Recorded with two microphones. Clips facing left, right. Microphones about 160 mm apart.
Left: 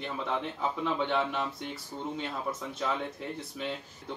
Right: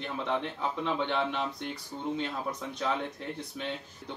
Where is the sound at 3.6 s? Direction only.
Centre (ahead or behind).